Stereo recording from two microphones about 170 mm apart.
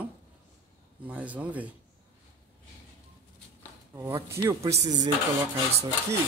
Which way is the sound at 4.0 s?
15° right (ahead or behind).